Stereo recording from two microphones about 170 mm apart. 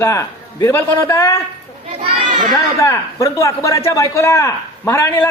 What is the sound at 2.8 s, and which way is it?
A man's voice, 20° left (ahead or behind).